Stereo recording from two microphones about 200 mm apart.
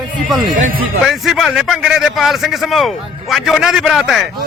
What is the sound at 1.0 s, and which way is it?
A man's voice, centre (ahead or behind).